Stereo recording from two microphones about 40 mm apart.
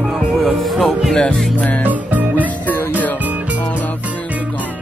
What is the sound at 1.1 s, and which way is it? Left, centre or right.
Music, left.